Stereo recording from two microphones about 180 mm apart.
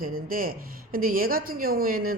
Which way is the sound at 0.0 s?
50° right (ahead or behind).